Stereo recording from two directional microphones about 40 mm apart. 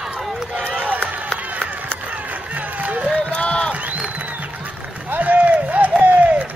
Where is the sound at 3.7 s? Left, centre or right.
Right.